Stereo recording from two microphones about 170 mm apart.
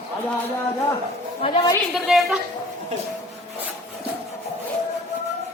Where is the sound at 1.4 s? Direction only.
30° left (ahead or behind).